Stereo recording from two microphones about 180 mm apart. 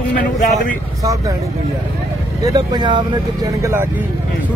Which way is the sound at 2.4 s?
20° right (ahead or behind).